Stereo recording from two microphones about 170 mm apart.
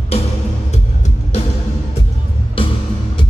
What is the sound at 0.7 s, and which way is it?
Music, 40° left (ahead or behind).